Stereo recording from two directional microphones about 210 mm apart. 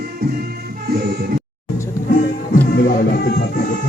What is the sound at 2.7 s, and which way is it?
Music, 45° left (ahead or behind).